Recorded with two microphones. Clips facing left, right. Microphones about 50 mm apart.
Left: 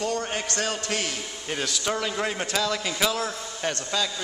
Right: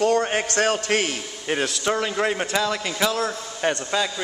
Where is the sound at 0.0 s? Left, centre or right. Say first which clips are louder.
Right 8 dB; right.